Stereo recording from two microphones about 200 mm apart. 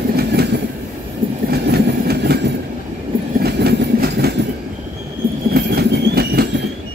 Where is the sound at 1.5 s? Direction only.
55° right (ahead or behind).